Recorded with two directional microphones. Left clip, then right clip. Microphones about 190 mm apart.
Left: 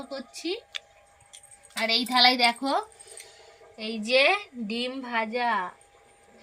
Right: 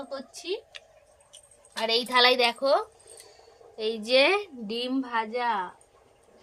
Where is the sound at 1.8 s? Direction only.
30° right (ahead or behind).